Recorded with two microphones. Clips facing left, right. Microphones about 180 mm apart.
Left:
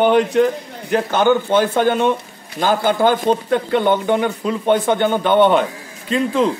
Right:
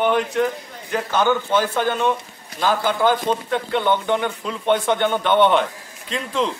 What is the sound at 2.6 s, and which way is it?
Speech, 45° left (ahead or behind).